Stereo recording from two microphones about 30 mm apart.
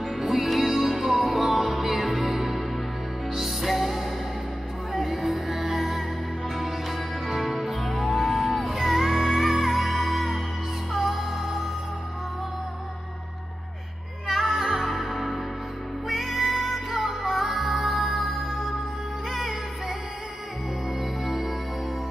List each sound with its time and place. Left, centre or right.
0.0 s music: centre
14.2 s music: centre
21.2 s music: centre